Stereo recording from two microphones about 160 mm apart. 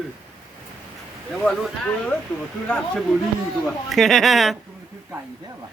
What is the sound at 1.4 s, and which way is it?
A woman's voice, 5° left (ahead or behind).